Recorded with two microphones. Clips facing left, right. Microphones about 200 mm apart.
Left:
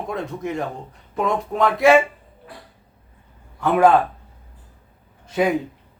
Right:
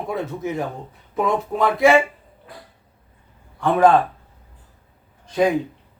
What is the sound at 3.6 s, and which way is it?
Speech, 5° left (ahead or behind).